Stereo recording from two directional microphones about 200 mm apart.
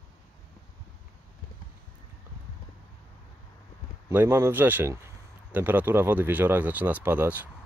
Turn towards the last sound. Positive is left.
turn(degrees=-10)  # may be behind; listen again after turning